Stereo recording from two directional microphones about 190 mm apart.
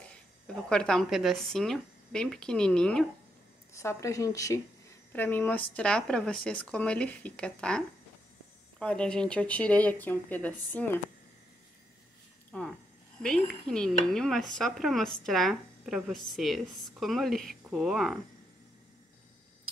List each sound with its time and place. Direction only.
0.7 s a woman's voice: 5° left (ahead or behind)
3.7 s a woman's voice: 15° left (ahead or behind)
12.4 s a sound: 5° left (ahead or behind)
13.2 s a woman's voice: 5° left (ahead or behind)